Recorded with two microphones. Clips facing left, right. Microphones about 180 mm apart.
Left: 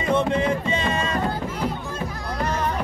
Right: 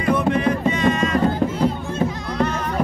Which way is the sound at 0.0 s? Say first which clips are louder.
Right 2 dB; 25° left (ahead or behind).